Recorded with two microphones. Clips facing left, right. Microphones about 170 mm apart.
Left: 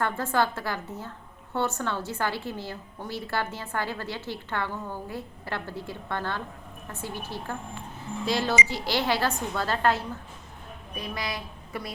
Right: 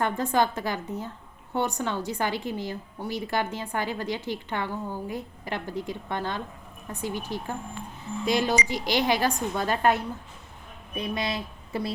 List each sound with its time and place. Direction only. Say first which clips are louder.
0.0 s a woman's voice: right 2 dB; 15° right (ahead or behind)